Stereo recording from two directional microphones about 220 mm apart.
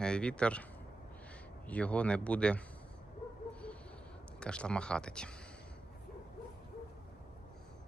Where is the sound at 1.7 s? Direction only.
5° left (ahead or behind).